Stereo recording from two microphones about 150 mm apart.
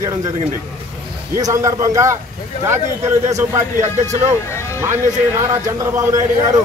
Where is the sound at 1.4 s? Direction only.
20° right (ahead or behind).